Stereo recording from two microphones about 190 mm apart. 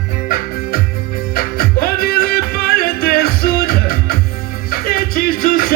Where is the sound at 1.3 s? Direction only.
50° left (ahead or behind).